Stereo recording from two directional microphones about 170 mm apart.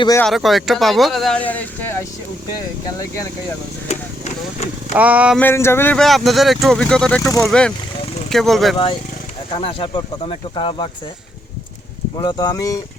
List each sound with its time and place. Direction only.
0.2 s speech: centre (ahead or behind)
3.8 s speech: 40° left (ahead or behind)
4.9 s speech: 10° right (ahead or behind)
5.4 s speech: 15° left (ahead or behind)
9.5 s speech: 30° left (ahead or behind)
12.1 s speech: 25° left (ahead or behind)